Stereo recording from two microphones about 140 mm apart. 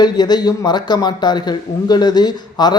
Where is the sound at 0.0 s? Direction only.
30° left (ahead or behind).